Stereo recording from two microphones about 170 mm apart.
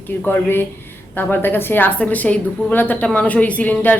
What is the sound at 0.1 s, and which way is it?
A woman's voice, 10° left (ahead or behind).